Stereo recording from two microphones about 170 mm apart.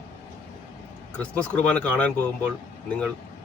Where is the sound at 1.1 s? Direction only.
5° left (ahead or behind).